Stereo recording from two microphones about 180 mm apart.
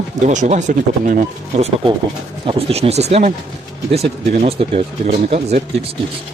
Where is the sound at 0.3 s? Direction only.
40° right (ahead or behind).